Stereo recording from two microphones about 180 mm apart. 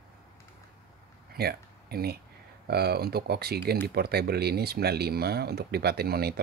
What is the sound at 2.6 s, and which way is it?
Speech, 60° right (ahead or behind).